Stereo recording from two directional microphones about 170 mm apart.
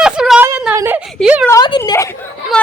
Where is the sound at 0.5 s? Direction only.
10° right (ahead or behind).